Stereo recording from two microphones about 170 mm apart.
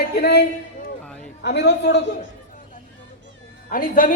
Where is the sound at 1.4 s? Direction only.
85° left.